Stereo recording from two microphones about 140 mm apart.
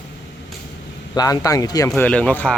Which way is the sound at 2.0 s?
10° left (ahead or behind).